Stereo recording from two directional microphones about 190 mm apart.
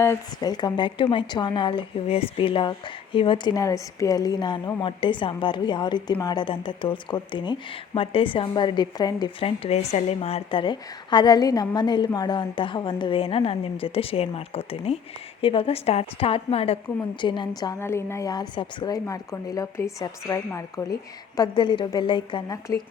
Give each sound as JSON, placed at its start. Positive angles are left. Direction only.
{"t": 0.0, "sound": "a woman's voice", "side_deg": 15}